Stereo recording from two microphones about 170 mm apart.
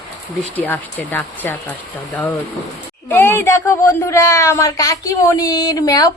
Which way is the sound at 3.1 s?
15° left (ahead or behind).